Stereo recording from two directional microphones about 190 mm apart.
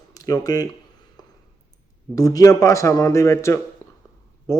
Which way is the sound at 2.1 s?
20° left (ahead or behind).